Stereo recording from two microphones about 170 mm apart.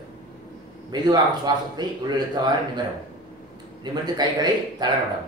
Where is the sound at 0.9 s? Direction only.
25° right (ahead or behind).